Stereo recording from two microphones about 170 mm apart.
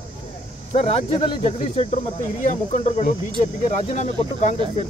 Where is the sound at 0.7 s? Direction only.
40° left (ahead or behind).